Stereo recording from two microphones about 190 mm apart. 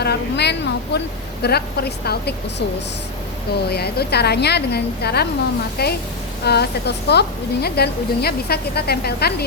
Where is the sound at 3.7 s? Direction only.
55° left (ahead or behind).